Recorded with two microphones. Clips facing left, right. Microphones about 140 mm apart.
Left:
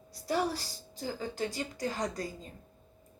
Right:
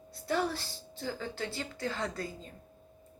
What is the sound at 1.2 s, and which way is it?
Speech, 15° left (ahead or behind).